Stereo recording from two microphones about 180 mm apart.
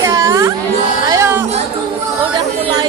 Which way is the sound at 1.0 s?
20° right (ahead or behind).